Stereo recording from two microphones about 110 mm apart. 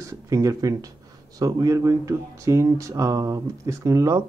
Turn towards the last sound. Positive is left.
turn(degrees=-30)  # may be behind; listen again after turning